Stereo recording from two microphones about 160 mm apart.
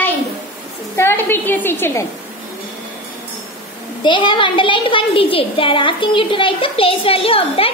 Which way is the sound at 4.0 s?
30° left (ahead or behind).